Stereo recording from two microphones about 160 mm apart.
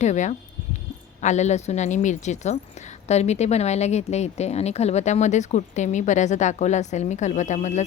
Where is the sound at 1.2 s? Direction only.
45° left (ahead or behind).